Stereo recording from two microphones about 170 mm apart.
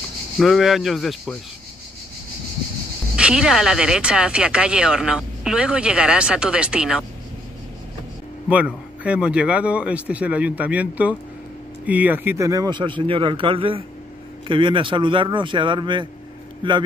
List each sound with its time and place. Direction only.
0.4 s speech: centre (ahead or behind)
3.2 s speech: 5° right (ahead or behind)
8.5 s speech: 10° right (ahead or behind); by 16.1 s 30° right (ahead or behind)